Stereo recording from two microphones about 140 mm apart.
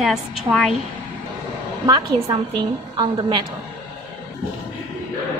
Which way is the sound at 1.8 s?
25° right (ahead or behind).